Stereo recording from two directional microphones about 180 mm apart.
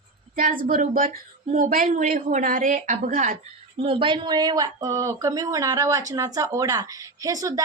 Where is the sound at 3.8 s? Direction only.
30° right (ahead or behind).